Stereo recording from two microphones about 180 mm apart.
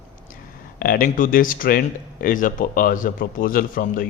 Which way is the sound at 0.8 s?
55° left (ahead or behind).